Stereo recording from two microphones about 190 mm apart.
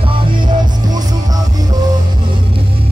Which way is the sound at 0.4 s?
25° right (ahead or behind).